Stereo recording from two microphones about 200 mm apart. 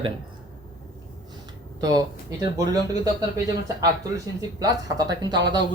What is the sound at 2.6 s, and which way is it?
Speech, 15° right (ahead or behind).